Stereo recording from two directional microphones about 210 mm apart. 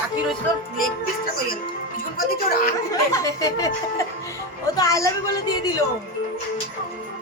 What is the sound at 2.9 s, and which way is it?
Speech, 15° left (ahead or behind).